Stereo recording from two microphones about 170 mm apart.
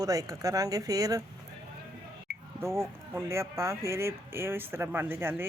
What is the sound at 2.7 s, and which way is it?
Speech, 15° right (ahead or behind).